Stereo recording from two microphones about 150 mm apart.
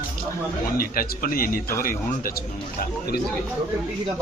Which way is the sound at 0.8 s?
75° left (ahead or behind).